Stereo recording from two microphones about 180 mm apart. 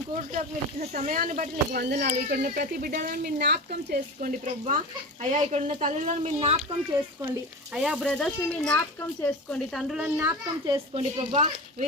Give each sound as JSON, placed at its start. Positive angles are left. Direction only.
{"t": 0.2, "sound": "speech", "side_deg": -40}
{"t": 1.8, "sound": "speech", "side_deg": -65}
{"t": 2.3, "sound": "speech", "side_deg": -55}
{"t": 7.7, "sound": "speech", "side_deg": -5}
{"t": 10.2, "sound": "a child's voice", "side_deg": -15}
{"t": 10.9, "sound": "speech", "side_deg": -35}